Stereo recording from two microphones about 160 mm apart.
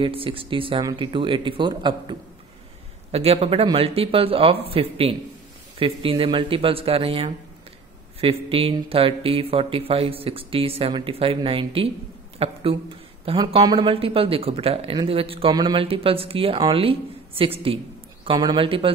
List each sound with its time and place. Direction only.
0.0 s speech: 35° right (ahead or behind)
3.1 s speech: 40° right (ahead or behind)